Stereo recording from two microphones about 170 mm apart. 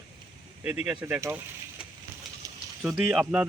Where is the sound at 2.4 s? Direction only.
20° right (ahead or behind).